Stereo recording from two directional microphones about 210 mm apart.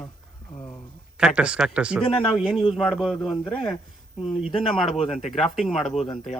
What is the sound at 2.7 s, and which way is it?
Speech, centre (ahead or behind).